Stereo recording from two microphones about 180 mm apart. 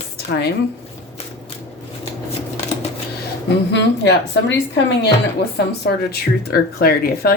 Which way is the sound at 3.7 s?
75° left (ahead or behind).